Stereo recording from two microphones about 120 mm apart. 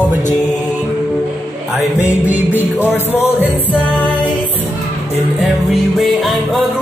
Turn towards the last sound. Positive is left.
turn(degrees=0)  # may be behind; listen again after turning